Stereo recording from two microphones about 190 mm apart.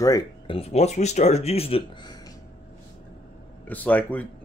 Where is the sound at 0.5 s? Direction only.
35° left (ahead or behind).